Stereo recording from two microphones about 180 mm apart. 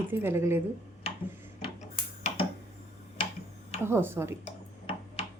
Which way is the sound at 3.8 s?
15° right (ahead or behind).